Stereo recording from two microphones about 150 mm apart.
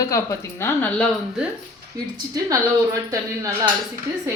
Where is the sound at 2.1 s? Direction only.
25° right (ahead or behind).